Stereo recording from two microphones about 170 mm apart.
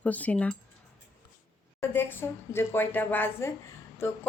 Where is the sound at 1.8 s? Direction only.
10° left (ahead or behind).